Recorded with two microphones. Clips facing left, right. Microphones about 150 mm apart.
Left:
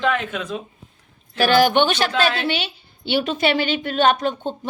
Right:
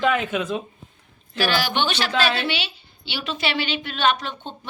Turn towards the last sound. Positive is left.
turn(degrees=45)  # may be behind; listen again after turning